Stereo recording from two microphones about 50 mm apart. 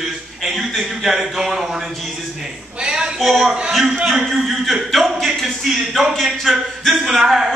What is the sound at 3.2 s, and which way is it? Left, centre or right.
Speech, centre.